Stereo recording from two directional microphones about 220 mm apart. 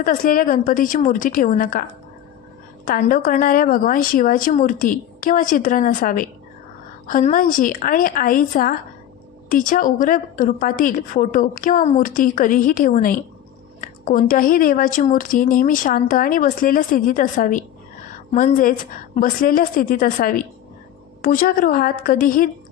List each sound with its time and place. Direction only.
0.0 s speech: 40° left (ahead or behind)
2.8 s speech: 40° left (ahead or behind)